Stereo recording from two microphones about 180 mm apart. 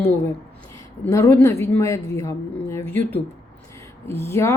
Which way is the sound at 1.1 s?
15° left (ahead or behind).